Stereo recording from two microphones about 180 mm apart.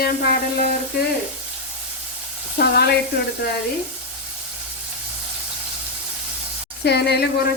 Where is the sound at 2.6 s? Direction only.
60° left (ahead or behind).